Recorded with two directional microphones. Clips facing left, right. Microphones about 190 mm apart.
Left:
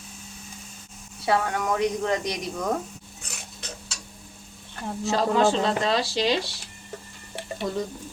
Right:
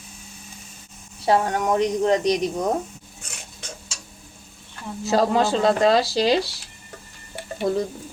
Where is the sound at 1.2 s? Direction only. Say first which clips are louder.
Right 4 dB; 35° right (ahead or behind).